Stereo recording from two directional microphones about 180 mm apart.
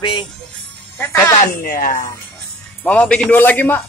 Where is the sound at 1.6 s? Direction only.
50° left (ahead or behind).